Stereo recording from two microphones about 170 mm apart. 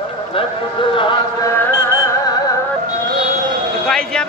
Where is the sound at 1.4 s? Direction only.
15° left (ahead or behind).